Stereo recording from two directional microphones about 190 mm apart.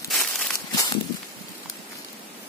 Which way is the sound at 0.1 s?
Centre (ahead or behind).